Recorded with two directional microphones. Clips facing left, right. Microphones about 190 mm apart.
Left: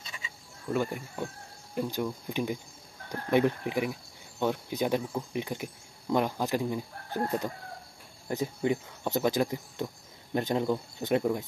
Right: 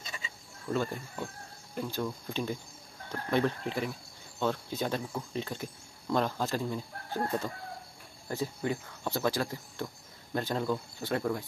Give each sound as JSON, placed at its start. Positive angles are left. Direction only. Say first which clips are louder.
{"t": 0.7, "sound": "speech", "louder": "left 2 dB", "side_deg": 15}